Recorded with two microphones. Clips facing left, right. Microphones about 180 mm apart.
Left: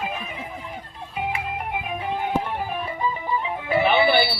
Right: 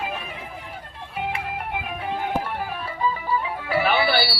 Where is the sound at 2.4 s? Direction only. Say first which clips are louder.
Left 2 dB; 20° left (ahead or behind).